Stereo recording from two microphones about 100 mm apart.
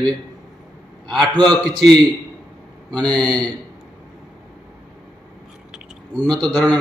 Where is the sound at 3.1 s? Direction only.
45° right (ahead or behind).